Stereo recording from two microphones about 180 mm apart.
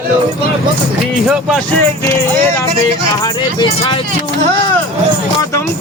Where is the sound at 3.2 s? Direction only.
25° left (ahead or behind).